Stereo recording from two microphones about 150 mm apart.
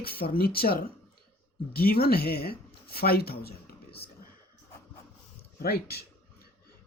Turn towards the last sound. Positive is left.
turn(degrees=90)